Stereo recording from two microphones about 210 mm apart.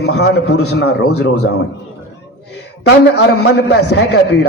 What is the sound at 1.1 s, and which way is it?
Speech, 90° left.